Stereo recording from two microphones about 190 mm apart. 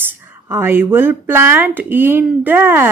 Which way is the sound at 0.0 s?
10° right (ahead or behind).